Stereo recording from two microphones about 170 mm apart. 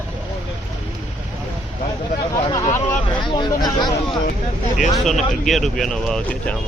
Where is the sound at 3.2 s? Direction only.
25° left (ahead or behind).